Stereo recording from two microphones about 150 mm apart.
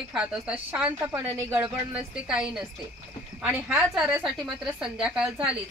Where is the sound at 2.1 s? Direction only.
5° right (ahead or behind).